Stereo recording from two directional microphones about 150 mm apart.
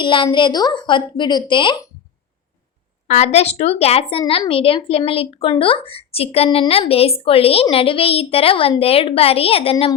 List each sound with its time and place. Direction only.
0.0 s speech: 35° left (ahead or behind)
3.3 s speech: 45° left (ahead or behind)